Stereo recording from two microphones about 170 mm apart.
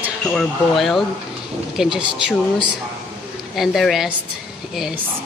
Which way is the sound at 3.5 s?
Centre (ahead or behind).